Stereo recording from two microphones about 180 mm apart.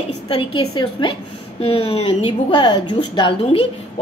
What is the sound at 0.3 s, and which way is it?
A woman's voice, 30° left (ahead or behind).